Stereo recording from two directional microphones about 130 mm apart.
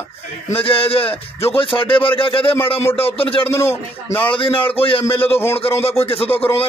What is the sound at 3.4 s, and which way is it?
Speech, 20° left (ahead or behind).